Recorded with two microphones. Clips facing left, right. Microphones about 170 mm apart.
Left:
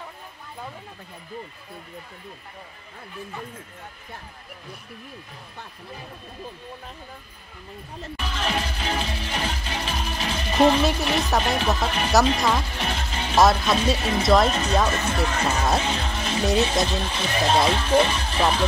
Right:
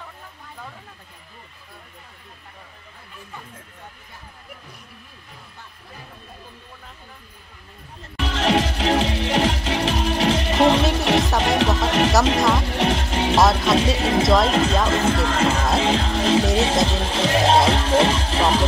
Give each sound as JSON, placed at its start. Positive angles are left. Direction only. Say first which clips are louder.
{"t": 8.2, "sound": "music", "louder": "right 8 dB", "side_deg": -80}
{"t": 13.6, "sound": "speech", "louder": "right 3 dB", "side_deg": -80}
{"t": 14.2, "sound": "speech", "louder": "left 1 dB", "side_deg": 0}
{"t": 14.9, "sound": "speech", "louder": "right 5 dB", "side_deg": -90}